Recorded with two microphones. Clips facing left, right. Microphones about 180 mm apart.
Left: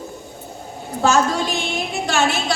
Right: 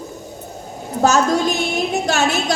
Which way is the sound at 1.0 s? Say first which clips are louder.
Right 2 dB; 40° right (ahead or behind).